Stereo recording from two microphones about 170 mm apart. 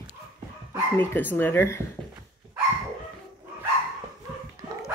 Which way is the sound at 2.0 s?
5° left (ahead or behind).